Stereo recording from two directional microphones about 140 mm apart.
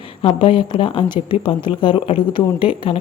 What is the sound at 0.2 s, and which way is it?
Speech, 40° left (ahead or behind).